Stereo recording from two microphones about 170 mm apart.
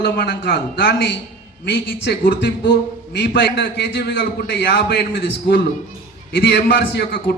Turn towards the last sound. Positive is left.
turn(degrees=85)